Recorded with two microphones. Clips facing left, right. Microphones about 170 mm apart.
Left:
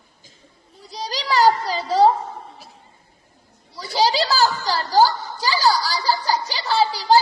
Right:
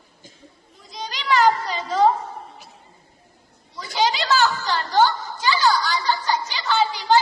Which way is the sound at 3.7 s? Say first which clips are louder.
Left 3 dB; 35° left (ahead or behind).